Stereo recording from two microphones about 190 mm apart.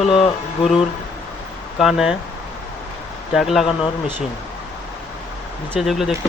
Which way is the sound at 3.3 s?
Centre (ahead or behind).